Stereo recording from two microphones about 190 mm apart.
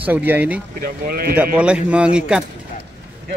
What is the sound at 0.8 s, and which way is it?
Speech, 55° right (ahead or behind).